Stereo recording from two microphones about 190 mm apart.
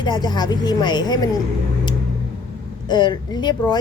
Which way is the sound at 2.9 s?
25° left (ahead or behind).